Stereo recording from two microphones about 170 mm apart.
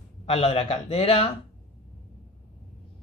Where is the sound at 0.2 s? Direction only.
35° left (ahead or behind).